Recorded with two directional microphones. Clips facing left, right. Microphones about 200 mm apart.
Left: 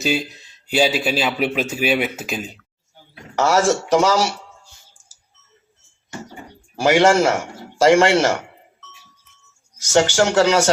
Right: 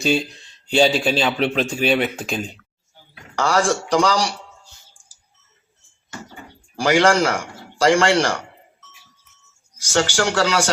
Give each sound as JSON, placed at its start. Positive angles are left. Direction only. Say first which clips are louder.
{"t": 0.0, "sound": "a man's voice", "louder": "right 2 dB", "side_deg": 5}
{"t": 3.3, "sound": "a man's voice", "louder": "left 2 dB", "side_deg": 25}
{"t": 6.1, "sound": "a man's voice", "louder": "left 3 dB", "side_deg": 25}
{"t": 9.9, "sound": "a man's voice", "louder": "left 4 dB", "side_deg": 20}